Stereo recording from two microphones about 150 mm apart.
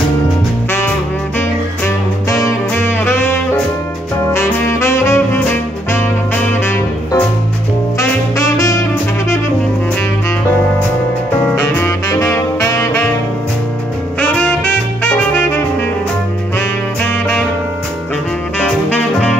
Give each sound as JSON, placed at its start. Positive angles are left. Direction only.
{"t": 1.9, "sound": "music", "side_deg": 20}
{"t": 4.3, "sound": "saxophone", "side_deg": 20}
{"t": 11.5, "sound": "saxophone", "side_deg": 15}
{"t": 14.2, "sound": "saxophone", "side_deg": 10}
{"t": 18.6, "sound": "music", "side_deg": 10}